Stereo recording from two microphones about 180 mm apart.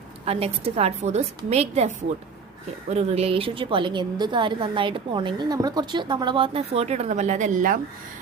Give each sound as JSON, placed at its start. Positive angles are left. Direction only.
{"t": 0.3, "sound": "a woman's voice", "side_deg": -35}
{"t": 2.9, "sound": "a woman's voice", "side_deg": -35}